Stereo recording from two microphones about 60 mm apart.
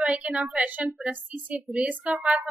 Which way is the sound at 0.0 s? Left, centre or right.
Centre.